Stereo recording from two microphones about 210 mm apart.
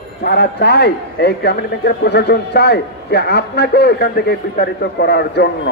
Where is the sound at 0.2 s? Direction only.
50° left (ahead or behind).